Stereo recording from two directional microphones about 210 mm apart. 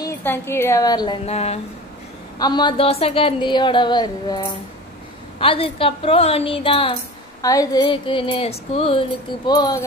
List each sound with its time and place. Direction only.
0.0 s a woman's voice: 10° left (ahead or behind); by 1.6 s 30° left (ahead or behind)
2.3 s a woman's voice: 20° left (ahead or behind)